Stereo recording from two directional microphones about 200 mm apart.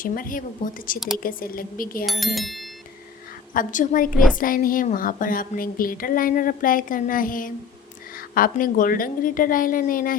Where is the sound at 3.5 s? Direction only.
40° left (ahead or behind).